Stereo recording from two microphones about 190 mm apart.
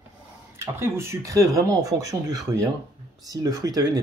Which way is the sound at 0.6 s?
15° right (ahead or behind).